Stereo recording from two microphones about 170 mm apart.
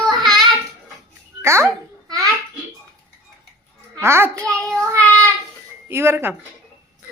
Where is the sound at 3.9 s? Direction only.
15° right (ahead or behind).